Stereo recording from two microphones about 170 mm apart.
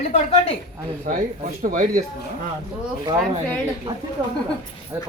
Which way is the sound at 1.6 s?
55° right (ahead or behind).